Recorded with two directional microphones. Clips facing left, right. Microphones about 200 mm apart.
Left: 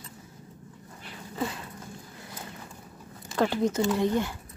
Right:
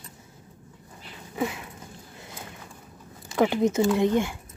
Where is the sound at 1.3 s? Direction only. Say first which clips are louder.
Right 3 dB; 15° right (ahead or behind).